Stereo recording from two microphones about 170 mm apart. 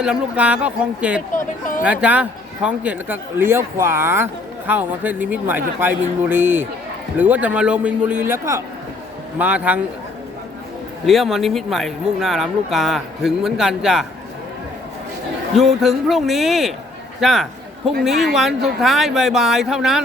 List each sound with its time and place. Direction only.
0.0 s a man's voice: 5° right (ahead or behind)
1.4 s speech: 50° left (ahead or behind)
1.8 s a man's voice: 10° right (ahead or behind)
11.0 s speech: centre (ahead or behind)
15.8 s speech: centre (ahead or behind)
17.2 s a sound: centre (ahead or behind)
18.0 s speech: centre (ahead or behind)